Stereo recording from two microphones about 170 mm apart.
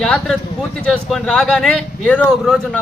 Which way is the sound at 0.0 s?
5° left (ahead or behind).